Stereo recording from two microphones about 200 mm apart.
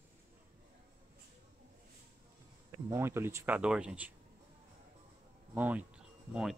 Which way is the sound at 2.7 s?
15° right (ahead or behind).